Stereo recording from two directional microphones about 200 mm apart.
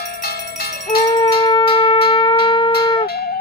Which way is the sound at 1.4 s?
25° left (ahead or behind).